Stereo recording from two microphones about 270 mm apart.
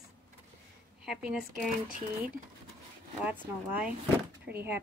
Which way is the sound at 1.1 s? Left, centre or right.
Centre.